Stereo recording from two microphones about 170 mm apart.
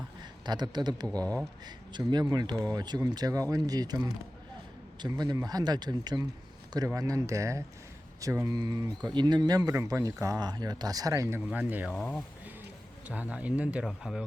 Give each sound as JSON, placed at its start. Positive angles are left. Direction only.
{"t": 0.4, "sound": "speech", "side_deg": -25}
{"t": 1.2, "sound": "speech", "side_deg": 10}
{"t": 1.6, "sound": "speech", "side_deg": -25}
{"t": 11.9, "sound": "speech", "side_deg": 5}
{"t": 13.1, "sound": "speech", "side_deg": -10}